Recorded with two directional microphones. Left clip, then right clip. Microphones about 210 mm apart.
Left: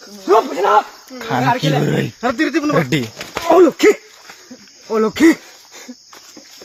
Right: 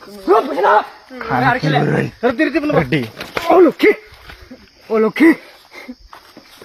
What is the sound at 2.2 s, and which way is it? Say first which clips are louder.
Speech: right 1 dB; 25° left (ahead or behind).